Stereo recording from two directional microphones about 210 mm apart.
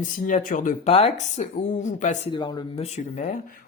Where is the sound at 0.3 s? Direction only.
40° left (ahead or behind).